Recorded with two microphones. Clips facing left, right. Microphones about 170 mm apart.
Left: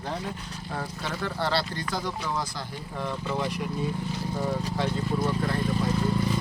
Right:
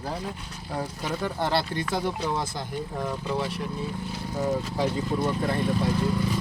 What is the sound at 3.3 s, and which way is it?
Speech, 5° right (ahead or behind).